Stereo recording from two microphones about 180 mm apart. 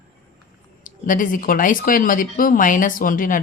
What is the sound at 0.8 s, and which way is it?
Speech, 45° left (ahead or behind).